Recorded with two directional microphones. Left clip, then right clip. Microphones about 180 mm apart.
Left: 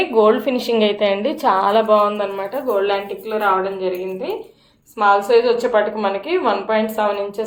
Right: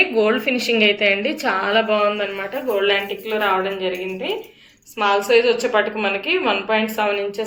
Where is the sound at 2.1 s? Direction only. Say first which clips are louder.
Left 1 dB; 30° left (ahead or behind).